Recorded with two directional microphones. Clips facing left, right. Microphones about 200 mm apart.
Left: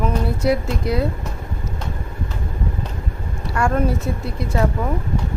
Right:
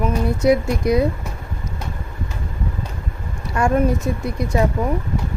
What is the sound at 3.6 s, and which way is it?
Speech, 15° right (ahead or behind).